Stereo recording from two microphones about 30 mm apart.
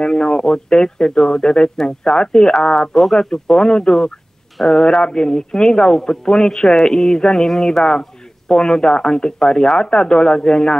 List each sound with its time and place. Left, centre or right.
0.0 s speech: left
2.9 s speech: centre
3.2 s speech: left